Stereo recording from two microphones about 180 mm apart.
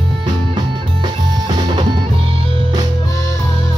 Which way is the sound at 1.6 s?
30° right (ahead or behind).